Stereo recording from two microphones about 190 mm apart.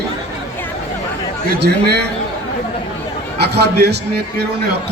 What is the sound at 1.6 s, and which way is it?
Speech, 60° right (ahead or behind).